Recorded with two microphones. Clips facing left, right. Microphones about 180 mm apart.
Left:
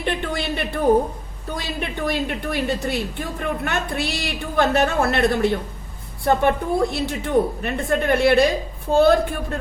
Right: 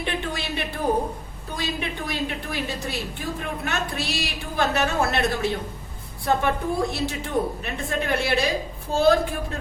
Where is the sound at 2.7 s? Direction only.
60° left (ahead or behind).